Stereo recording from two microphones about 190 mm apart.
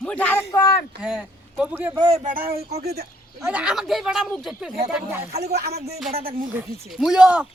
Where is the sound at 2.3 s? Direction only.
50° right (ahead or behind).